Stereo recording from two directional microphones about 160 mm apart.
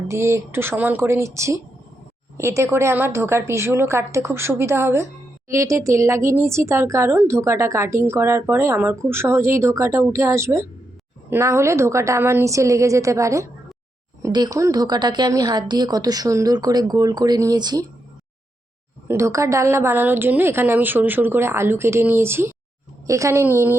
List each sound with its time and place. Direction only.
0.1 s speech: 15° right (ahead or behind)
19.0 s speech: 20° right (ahead or behind)